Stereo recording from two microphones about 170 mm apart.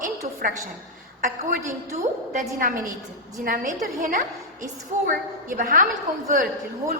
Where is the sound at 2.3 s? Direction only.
50° right (ahead or behind).